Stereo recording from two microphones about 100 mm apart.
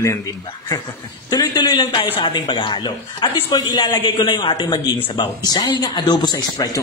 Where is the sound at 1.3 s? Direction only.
45° left (ahead or behind).